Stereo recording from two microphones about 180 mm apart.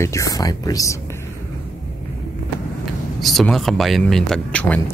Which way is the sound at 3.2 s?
Centre (ahead or behind).